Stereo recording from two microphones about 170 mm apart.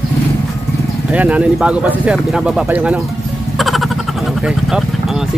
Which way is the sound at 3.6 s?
Centre (ahead or behind).